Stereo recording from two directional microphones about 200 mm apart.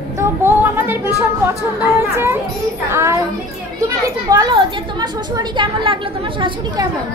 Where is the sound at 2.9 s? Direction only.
15° right (ahead or behind).